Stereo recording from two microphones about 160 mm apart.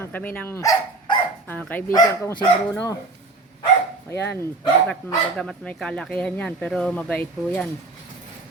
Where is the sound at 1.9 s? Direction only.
20° left (ahead or behind).